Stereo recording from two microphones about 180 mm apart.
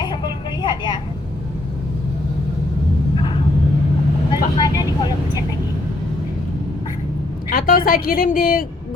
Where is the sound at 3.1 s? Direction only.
30° left (ahead or behind).